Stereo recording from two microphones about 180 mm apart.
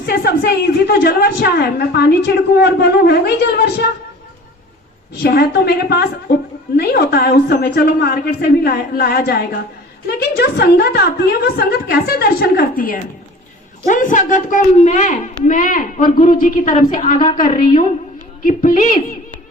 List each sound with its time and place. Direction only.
0.0 s a woman's voice: 60° left (ahead or behind)
5.2 s a woman's voice: 60° left (ahead or behind)